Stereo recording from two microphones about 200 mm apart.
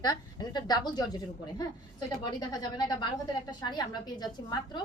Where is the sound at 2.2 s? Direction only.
20° left (ahead or behind).